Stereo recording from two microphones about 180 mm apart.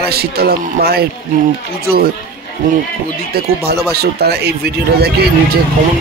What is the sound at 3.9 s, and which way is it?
A man's voice, 60° right (ahead or behind).